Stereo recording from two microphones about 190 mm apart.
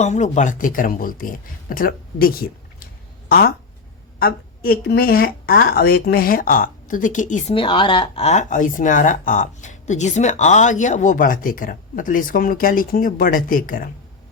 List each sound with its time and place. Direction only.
0.0 s speech: 40° left (ahead or behind)
7.5 s speech: 25° left (ahead or behind); by 13.9 s 45° left (ahead or behind)